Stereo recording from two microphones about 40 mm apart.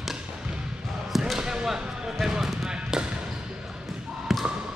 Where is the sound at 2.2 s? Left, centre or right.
Centre.